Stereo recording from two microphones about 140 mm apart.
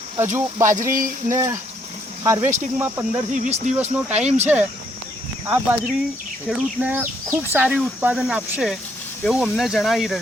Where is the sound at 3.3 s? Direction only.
60° right (ahead or behind).